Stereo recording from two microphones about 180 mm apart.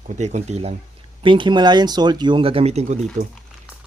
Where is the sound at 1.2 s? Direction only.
25° right (ahead or behind).